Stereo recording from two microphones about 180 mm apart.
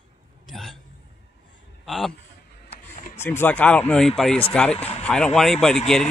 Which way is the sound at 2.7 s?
40° left (ahead or behind).